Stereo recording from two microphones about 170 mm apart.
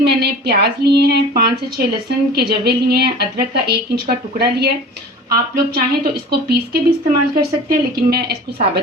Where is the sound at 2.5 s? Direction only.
70° right (ahead or behind).